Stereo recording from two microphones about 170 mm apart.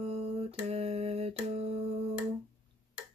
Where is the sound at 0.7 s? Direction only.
35° right (ahead or behind).